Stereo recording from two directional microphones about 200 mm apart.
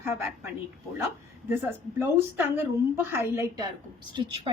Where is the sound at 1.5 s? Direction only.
10° right (ahead or behind).